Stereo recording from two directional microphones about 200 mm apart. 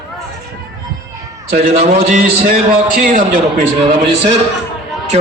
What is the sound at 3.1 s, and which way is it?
A man's voice, 40° right (ahead or behind).